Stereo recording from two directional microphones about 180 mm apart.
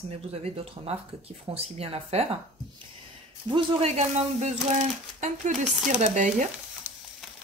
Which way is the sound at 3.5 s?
30° right (ahead or behind).